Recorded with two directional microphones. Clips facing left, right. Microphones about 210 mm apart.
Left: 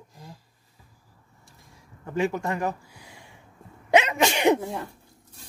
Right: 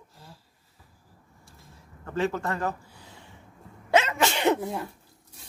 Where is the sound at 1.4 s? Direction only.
15° left (ahead or behind).